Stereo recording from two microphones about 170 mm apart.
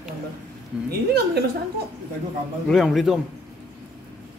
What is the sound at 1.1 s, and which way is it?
Speech, 75° right (ahead or behind).